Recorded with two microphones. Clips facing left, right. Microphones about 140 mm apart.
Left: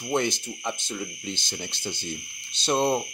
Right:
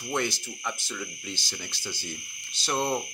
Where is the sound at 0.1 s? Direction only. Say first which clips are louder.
Left 4 dB; 20° left (ahead or behind).